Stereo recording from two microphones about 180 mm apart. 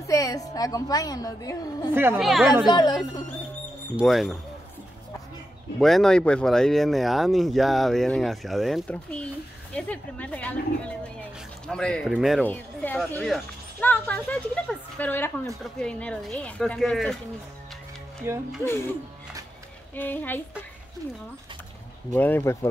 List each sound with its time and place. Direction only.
0.0 s a woman's voice: 20° left (ahead or behind)
2.1 s speech: centre (ahead or behind)
2.6 s a woman's voice: 25° left (ahead or behind)
3.9 s speech: centre (ahead or behind)
5.8 s speech: centre (ahead or behind)
12.4 s speech: 10° left (ahead or behind)
18.3 s speech: 15° right (ahead or behind)
20.0 s speech: 10° left (ahead or behind)
22.1 s speech: 10° left (ahead or behind)